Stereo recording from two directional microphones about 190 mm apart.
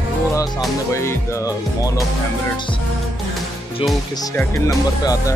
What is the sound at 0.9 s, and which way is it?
Speech, 15° left (ahead or behind).